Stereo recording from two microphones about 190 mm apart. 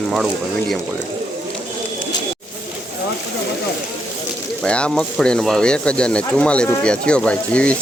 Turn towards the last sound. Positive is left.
turn(degrees=5)  # may be behind; listen again after turning